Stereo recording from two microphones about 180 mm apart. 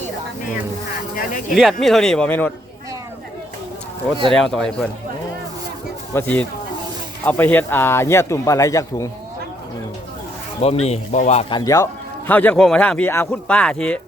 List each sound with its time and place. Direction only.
1.1 s speech: 50° left (ahead or behind)
1.8 s speech: centre (ahead or behind)
4.3 s speech: 5° left (ahead or behind)
6.1 s speech: 10° left (ahead or behind)
10.6 s speech: 35° left (ahead or behind); by 11.9 s 20° left (ahead or behind)
12.3 s speech: 10° left (ahead or behind)